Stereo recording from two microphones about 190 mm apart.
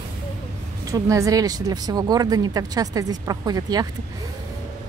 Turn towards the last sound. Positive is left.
turn(degrees=-20)  # may be behind; listen again after turning